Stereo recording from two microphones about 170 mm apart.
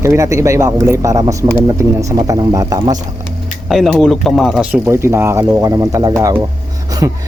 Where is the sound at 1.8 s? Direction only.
20° right (ahead or behind).